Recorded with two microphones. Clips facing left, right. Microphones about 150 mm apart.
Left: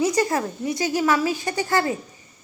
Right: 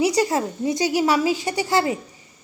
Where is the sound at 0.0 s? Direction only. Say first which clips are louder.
Right 1 dB; 15° right (ahead or behind).